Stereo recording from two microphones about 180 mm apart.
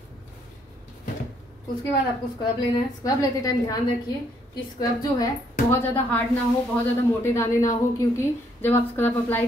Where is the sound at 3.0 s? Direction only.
20° left (ahead or behind).